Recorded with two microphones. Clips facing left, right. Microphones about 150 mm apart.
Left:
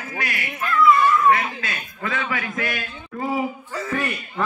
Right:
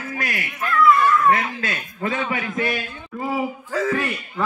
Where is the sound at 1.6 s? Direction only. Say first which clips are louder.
Right 4 dB; 35° right (ahead or behind).